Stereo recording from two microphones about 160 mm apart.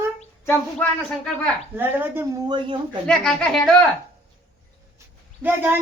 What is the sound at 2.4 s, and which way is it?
Speech, 30° right (ahead or behind).